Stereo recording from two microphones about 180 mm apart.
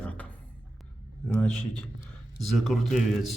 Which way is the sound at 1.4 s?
5° left (ahead or behind).